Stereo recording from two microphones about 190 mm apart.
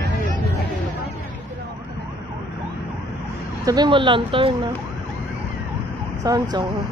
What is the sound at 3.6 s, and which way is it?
Speech, 20° right (ahead or behind).